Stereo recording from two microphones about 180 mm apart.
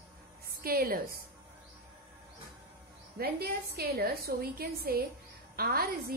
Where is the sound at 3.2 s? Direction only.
60° right (ahead or behind).